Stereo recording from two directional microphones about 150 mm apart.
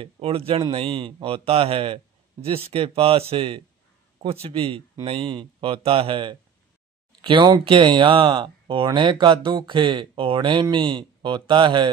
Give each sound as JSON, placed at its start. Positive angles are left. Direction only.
{"t": 0.0, "sound": "speech", "side_deg": -40}